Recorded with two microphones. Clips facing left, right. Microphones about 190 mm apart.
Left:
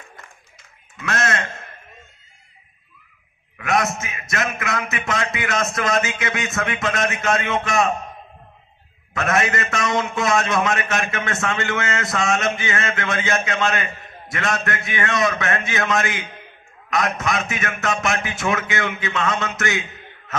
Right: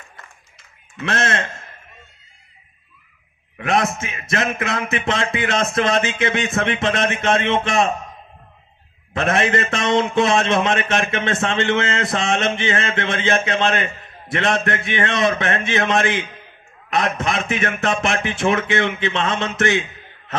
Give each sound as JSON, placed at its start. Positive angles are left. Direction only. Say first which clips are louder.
{"t": 0.9, "sound": "a man's voice", "louder": "right 2 dB", "side_deg": -30}
{"t": 3.6, "sound": "a man's voice", "louder": "right 2 dB", "side_deg": -30}
{"t": 9.1, "sound": "a man's voice", "louder": "right 3 dB", "side_deg": -30}